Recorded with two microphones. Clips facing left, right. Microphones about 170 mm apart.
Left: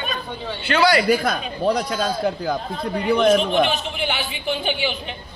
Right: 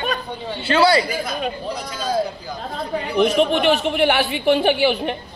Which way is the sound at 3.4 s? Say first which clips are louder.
Right 3 dB; 65° right (ahead or behind).